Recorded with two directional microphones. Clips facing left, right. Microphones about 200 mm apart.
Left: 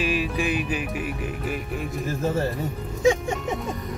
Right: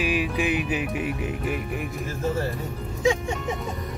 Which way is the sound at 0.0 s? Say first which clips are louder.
Even; 15° right (ahead or behind).